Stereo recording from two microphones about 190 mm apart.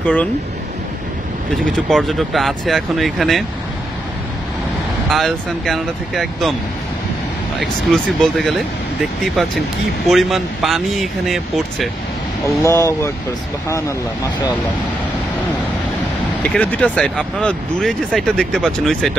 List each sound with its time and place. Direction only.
0.0 s speech: 5° left (ahead or behind)
1.9 s speech: centre (ahead or behind)
5.1 s speech: centre (ahead or behind)
7.6 s speech: centre (ahead or behind)
10.0 s speech: centre (ahead or behind)
12.6 s speech: 15° left (ahead or behind)
16.5 s speech: 5° left (ahead or behind)